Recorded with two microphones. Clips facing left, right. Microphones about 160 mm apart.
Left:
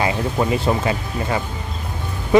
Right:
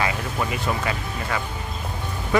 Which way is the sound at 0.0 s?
30° left (ahead or behind).